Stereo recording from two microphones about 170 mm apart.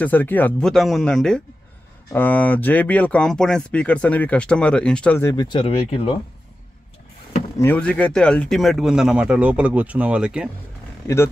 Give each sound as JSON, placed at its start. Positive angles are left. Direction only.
{"t": 0.0, "sound": "speech", "side_deg": 10}
{"t": 5.3, "sound": "speech", "side_deg": 25}
{"t": 7.5, "sound": "speech", "side_deg": 10}